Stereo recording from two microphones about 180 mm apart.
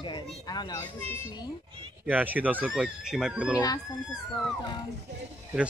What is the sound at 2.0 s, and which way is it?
Speech, 10° right (ahead or behind).